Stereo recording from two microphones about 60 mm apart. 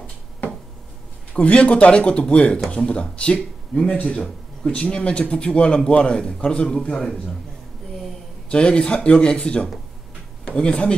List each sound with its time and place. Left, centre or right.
1.3 s speech: centre
8.5 s speech: centre